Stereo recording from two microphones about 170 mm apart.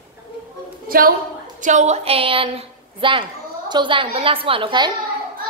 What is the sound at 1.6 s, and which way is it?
A woman's voice, 45° right (ahead or behind).